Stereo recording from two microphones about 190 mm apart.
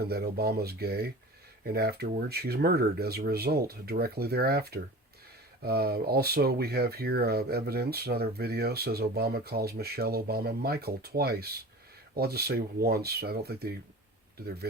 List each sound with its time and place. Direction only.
0.0 s speech: 55° right (ahead or behind)